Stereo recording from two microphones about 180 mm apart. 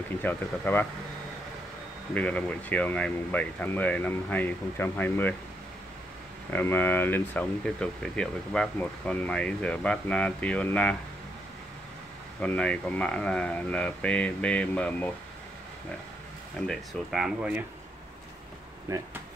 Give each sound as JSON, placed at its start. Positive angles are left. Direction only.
{"t": 0.2, "sound": "speech", "side_deg": 10}
{"t": 2.1, "sound": "speech", "side_deg": 10}
{"t": 6.5, "sound": "speech", "side_deg": 10}
{"t": 12.4, "sound": "speech", "side_deg": 5}
{"t": 16.5, "sound": "speech", "side_deg": 0}
{"t": 18.9, "sound": "speech", "side_deg": -15}